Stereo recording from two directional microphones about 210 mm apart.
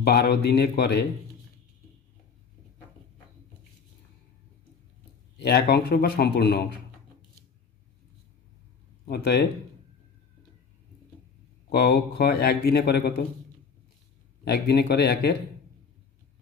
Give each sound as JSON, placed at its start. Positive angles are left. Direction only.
{"t": 0.0, "sound": "speech", "side_deg": 50}
{"t": 5.4, "sound": "speech", "side_deg": 50}
{"t": 9.1, "sound": "speech", "side_deg": 50}
{"t": 11.7, "sound": "speech", "side_deg": 50}
{"t": 14.4, "sound": "speech", "side_deg": 50}